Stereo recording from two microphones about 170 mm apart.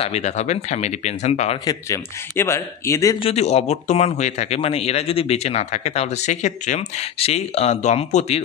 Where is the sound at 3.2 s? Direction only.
35° left (ahead or behind).